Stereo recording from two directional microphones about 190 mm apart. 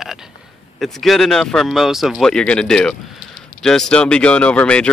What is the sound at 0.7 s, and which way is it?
Speech, centre (ahead or behind).